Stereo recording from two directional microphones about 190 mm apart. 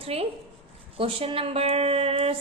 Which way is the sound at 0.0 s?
30° right (ahead or behind).